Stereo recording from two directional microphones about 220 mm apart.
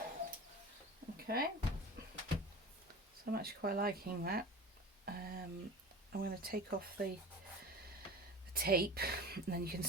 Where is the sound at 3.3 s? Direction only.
45° right (ahead or behind).